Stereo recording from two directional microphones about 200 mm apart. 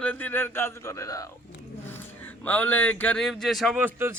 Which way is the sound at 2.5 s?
10° left (ahead or behind).